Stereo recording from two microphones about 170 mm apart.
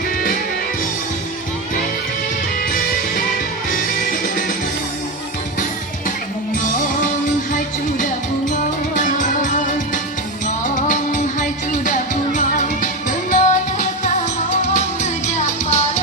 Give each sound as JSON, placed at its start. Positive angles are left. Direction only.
{"t": 3.7, "sound": "music", "side_deg": 55}
{"t": 9.0, "sound": "music", "side_deg": 50}